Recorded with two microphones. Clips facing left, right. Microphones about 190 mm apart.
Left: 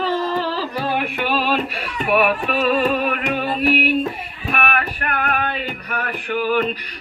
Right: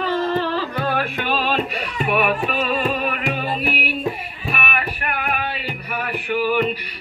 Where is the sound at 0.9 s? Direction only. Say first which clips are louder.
Left 1 dB; 10° left (ahead or behind); by 6.7 s 10° right (ahead or behind).